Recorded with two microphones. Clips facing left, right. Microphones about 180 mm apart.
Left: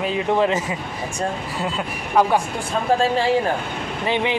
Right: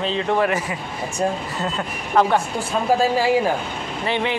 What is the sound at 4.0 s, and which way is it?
Speech, 15° left (ahead or behind).